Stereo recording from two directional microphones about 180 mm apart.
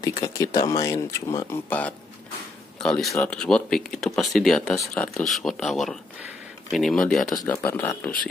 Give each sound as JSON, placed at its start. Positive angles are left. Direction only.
{"t": 0.2, "sound": "speech", "side_deg": 20}
{"t": 7.3, "sound": "speech", "side_deg": 15}